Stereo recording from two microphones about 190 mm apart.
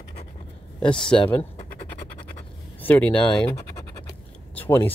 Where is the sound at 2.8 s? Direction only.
10° left (ahead or behind).